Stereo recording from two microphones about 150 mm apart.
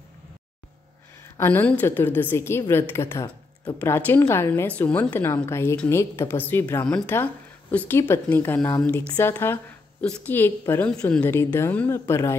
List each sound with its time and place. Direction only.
1.4 s a woman's voice: 15° left (ahead or behind)